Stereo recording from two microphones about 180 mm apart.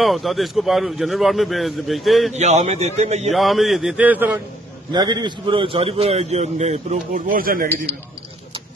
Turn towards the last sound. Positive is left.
turn(degrees=-50)  # may be behind; listen again after turning